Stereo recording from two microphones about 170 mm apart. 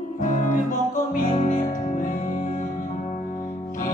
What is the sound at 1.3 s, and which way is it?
Music, 35° left (ahead or behind).